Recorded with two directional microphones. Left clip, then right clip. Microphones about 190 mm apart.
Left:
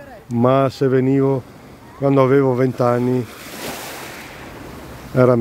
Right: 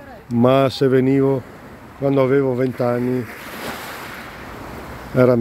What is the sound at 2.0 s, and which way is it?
Speech, 15° left (ahead or behind).